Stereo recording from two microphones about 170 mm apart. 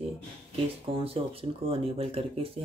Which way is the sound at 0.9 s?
35° right (ahead or behind).